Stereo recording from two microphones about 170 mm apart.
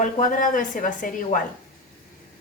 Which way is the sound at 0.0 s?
50° left (ahead or behind).